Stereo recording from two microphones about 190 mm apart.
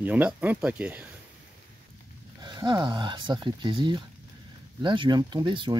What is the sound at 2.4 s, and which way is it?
Speech, 20° right (ahead or behind).